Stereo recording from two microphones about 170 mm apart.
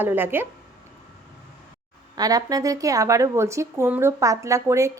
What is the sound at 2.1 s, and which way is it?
A woman's voice, 20° right (ahead or behind).